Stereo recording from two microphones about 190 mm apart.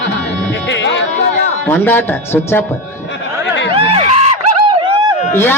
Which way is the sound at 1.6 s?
10° left (ahead or behind).